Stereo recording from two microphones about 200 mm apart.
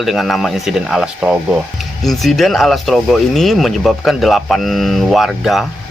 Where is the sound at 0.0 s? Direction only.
Centre (ahead or behind).